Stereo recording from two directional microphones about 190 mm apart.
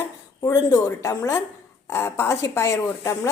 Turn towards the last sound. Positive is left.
turn(degrees=15)  # may be behind; listen again after turning